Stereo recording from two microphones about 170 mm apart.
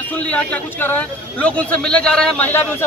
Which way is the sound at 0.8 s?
10° left (ahead or behind).